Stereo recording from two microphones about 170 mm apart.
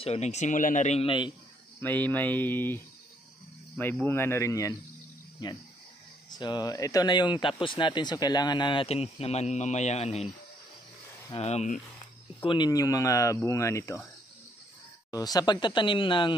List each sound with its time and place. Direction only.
0.0 s speech: 40° left (ahead or behind)
1.8 s speech: 10° left (ahead or behind)
6.3 s speech: 25° left (ahead or behind)
11.4 s speech: 40° left (ahead or behind)
12.4 s speech: 25° left (ahead or behind)
15.0 s speech: 20° left (ahead or behind)